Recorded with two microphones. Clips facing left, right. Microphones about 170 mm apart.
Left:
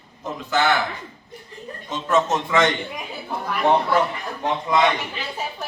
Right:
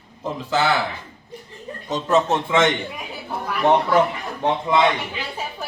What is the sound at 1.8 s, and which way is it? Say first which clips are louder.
Speech: right 2 dB; 35° right (ahead or behind).